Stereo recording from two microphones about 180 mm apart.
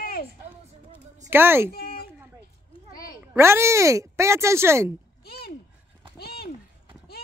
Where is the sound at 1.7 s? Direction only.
55° left (ahead or behind).